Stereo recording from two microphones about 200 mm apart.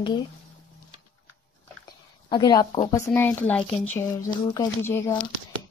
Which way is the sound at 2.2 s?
20° left (ahead or behind).